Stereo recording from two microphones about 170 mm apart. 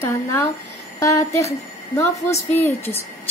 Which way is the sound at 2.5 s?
15° left (ahead or behind).